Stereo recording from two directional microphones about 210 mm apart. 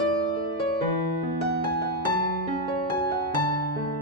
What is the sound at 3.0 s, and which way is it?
Music, 25° left (ahead or behind).